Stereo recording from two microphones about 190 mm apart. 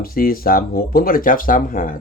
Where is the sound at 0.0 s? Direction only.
50° left (ahead or behind).